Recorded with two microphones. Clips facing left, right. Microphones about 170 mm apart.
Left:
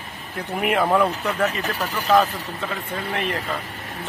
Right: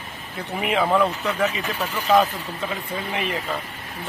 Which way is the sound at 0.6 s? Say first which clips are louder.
Left 1 dB; centre (ahead or behind).